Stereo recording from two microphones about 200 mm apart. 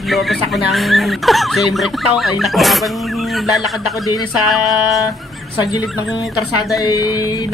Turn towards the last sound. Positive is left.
turn(degrees=20)  # may be behind; listen again after turning